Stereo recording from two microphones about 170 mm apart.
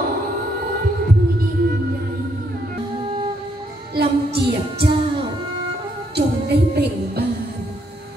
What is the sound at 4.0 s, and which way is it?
Music, 75° right (ahead or behind).